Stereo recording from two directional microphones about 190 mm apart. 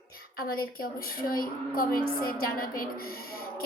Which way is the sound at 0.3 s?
50° left (ahead or behind).